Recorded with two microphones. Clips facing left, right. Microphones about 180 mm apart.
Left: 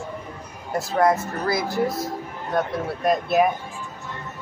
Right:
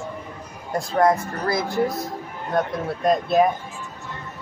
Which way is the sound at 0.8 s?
5° left (ahead or behind).